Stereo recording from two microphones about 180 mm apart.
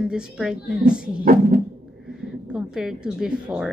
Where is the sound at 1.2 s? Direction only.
50° right (ahead or behind).